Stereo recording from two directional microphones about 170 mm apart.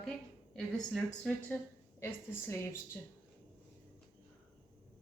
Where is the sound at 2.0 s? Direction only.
15° left (ahead or behind).